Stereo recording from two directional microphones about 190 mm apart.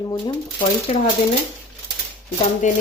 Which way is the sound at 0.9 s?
35° left (ahead or behind).